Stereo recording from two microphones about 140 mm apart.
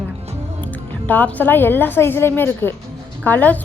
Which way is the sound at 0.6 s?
10° left (ahead or behind).